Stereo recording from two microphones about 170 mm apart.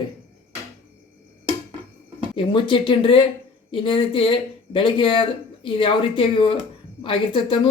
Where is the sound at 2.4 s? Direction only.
30° left (ahead or behind).